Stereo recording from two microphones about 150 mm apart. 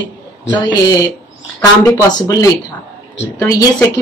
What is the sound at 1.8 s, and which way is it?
Speech, 25° left (ahead or behind).